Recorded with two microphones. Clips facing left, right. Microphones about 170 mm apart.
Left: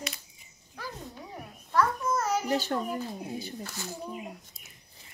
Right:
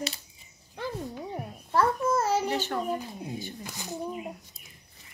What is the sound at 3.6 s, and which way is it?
Speech, 15° right (ahead or behind).